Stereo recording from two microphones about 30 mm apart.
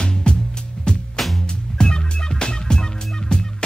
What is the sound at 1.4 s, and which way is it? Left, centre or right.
Music, left.